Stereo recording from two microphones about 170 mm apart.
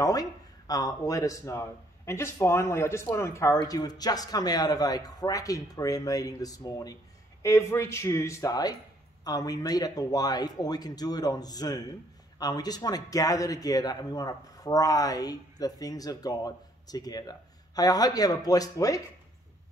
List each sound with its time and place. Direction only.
0.0 s speech: 20° left (ahead or behind)